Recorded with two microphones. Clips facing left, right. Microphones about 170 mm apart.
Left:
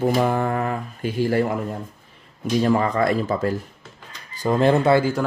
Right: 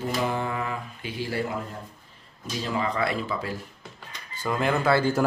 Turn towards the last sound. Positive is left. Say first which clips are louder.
# left 6 dB
turn(degrees=25)  # may be behind; listen again after turning